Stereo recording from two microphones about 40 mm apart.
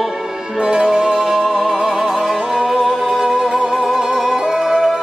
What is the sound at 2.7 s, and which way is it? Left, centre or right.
Music, centre.